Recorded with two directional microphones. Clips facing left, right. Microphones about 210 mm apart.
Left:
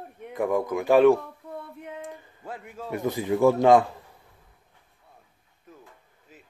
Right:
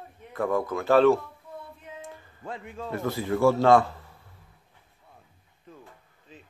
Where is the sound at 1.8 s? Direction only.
60° left (ahead or behind).